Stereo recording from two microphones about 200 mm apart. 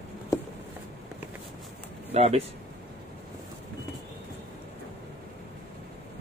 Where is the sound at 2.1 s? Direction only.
30° right (ahead or behind).